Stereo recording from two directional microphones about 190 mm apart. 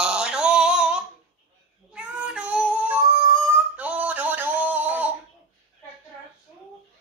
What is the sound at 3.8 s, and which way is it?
Music, 10° right (ahead or behind).